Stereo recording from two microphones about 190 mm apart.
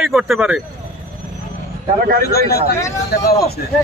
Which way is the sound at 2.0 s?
50° right (ahead or behind).